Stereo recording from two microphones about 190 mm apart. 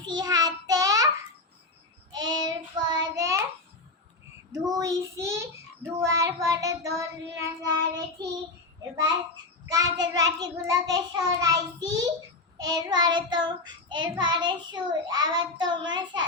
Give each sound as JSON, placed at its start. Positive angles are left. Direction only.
{"t": 0.0, "sound": "child singing", "side_deg": -20}
{"t": 2.1, "sound": "child singing", "side_deg": -20}
{"t": 4.5, "sound": "child singing", "side_deg": -20}
{"t": 9.0, "sound": "a child's voice", "side_deg": -20}